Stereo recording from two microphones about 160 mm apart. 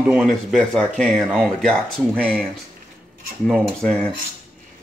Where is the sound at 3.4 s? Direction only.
5° left (ahead or behind).